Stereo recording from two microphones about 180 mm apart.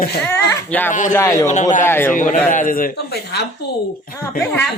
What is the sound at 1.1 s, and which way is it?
Speech, 15° left (ahead or behind).